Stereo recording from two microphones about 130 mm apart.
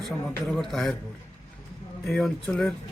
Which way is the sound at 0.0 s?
Centre (ahead or behind).